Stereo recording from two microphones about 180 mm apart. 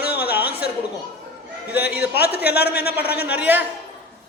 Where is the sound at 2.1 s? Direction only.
60° left (ahead or behind).